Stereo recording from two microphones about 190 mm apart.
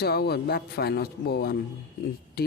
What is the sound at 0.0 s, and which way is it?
Speech, 60° left (ahead or behind).